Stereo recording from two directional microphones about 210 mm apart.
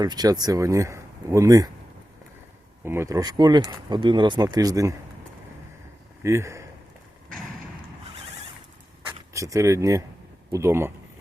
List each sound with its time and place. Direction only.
0.0 s speech: 20° right (ahead or behind)
2.8 s speech: 10° right (ahead or behind)
6.2 s speech: 15° right (ahead or behind)
9.3 s speech: 15° right (ahead or behind)